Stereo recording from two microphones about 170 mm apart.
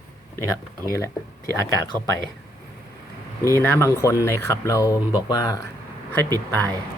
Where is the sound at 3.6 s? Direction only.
15° left (ahead or behind).